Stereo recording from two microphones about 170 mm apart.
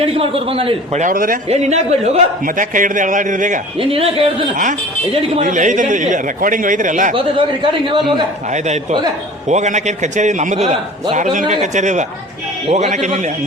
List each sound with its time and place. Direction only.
0.0 s a man's voice: 35° right (ahead or behind); by 1.4 s 55° right (ahead or behind)
1.5 s a man's voice: 40° right (ahead or behind)
2.4 s a man's voice: 50° right (ahead or behind)
3.8 s a man's voice: 35° right (ahead or behind)
4.5 s a man's voice: 50° right (ahead or behind)
5.1 s a man's voice: 35° right (ahead or behind)
5.5 s a man's voice: 45° right (ahead or behind)
7.3 s a man's voice: 30° right (ahead or behind)
8.4 s a man's voice: 45° right (ahead or behind)